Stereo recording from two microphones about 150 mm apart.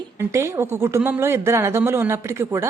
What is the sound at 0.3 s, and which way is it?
Speech, 20° right (ahead or behind).